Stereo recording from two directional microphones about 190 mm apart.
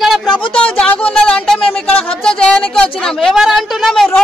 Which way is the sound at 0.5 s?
5° left (ahead or behind).